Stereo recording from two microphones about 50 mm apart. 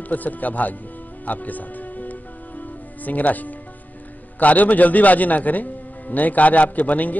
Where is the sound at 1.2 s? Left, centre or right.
Left.